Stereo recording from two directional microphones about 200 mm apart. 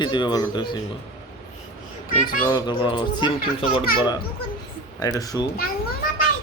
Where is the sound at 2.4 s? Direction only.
20° left (ahead or behind).